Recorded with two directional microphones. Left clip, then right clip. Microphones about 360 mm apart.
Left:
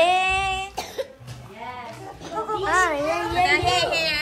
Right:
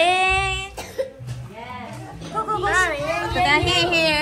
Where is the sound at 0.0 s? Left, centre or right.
Centre.